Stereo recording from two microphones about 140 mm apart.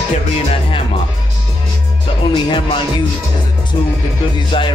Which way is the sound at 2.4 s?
35° left (ahead or behind).